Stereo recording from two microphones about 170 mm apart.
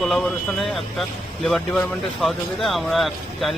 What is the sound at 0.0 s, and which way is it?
Speech, centre (ahead or behind).